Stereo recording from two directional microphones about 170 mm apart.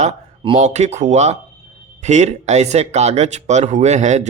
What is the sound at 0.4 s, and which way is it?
Speech, 40° right (ahead or behind).